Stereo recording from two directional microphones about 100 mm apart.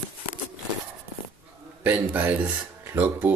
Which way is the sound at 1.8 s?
15° right (ahead or behind).